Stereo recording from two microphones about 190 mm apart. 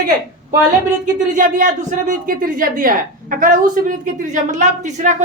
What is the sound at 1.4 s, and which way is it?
A man's voice, 45° right (ahead or behind).